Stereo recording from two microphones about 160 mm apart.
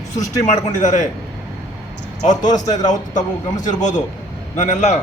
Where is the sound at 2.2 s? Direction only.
50° left (ahead or behind).